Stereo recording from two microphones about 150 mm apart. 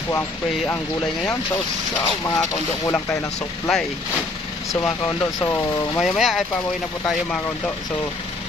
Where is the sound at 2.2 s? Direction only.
25° left (ahead or behind).